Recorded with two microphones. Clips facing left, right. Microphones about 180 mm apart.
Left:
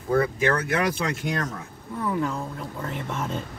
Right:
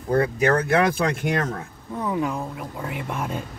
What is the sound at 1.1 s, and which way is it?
Speech, 55° right (ahead or behind).